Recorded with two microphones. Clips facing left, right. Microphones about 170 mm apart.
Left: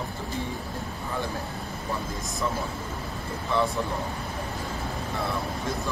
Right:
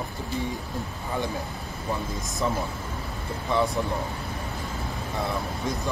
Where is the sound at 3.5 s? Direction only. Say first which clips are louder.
Right 1 dB; 20° right (ahead or behind).